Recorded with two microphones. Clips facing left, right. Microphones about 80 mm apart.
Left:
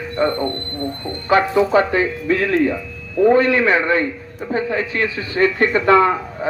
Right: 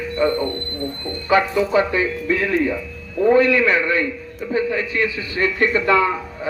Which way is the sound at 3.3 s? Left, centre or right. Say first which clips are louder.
Right 3 dB; left.